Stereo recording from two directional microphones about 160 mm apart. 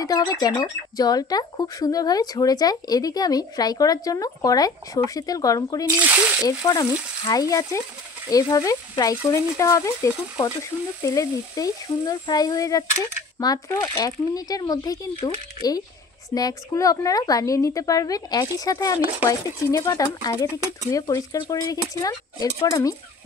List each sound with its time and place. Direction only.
0.0 s speech: 25° left (ahead or behind)